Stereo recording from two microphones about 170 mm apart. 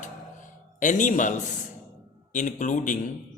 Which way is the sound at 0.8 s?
50° left (ahead or behind).